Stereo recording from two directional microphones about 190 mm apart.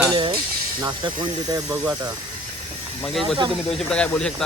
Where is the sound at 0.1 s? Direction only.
20° right (ahead or behind).